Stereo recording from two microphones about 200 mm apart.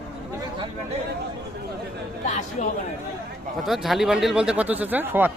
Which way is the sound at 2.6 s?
40° left (ahead or behind).